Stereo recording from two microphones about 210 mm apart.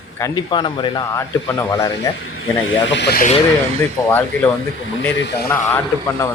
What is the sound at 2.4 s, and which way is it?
Speech, 70° left (ahead or behind).